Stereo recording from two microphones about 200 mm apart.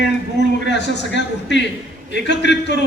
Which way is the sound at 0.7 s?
60° left (ahead or behind).